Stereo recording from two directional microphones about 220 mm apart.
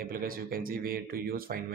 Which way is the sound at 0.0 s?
40° right (ahead or behind).